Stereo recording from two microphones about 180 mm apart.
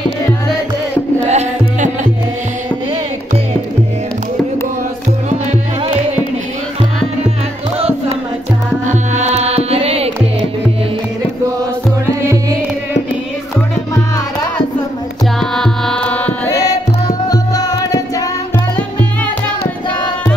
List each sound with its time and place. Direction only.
1.3 s music: 40° right (ahead or behind)
5.3 s music: 30° right (ahead or behind)
8.8 s music: 40° right (ahead or behind)
15.5 s music: 5° left (ahead or behind)
16.6 s music: 20° left (ahead or behind)